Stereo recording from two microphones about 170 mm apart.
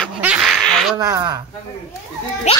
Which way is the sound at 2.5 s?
40° left (ahead or behind).